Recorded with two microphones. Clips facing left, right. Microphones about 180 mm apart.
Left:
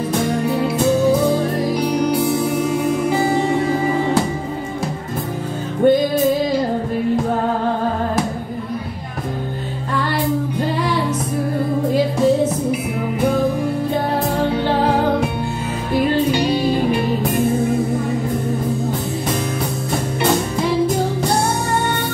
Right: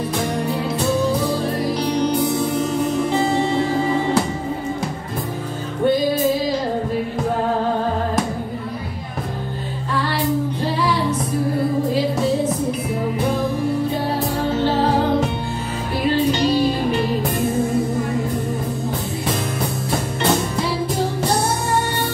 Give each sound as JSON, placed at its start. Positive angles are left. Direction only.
{"t": 1.8, "sound": "music", "side_deg": 10}
{"t": 5.8, "sound": "music", "side_deg": 50}